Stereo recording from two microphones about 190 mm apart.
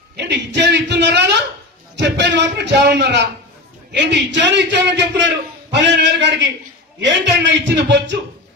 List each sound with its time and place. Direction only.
0.1 s a man's voice: 65° right (ahead or behind)